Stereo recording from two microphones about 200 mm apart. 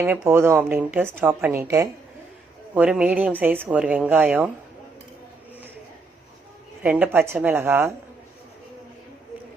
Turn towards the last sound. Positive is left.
turn(degrees=-10)  # may be behind; listen again after turning